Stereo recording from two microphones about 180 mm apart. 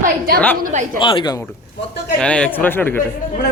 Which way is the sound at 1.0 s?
25° left (ahead or behind).